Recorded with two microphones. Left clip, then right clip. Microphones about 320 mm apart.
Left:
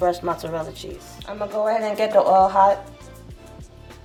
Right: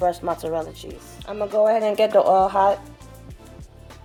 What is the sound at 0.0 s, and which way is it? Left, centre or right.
Speech, centre.